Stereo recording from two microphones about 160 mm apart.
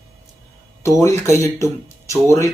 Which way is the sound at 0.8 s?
15° left (ahead or behind).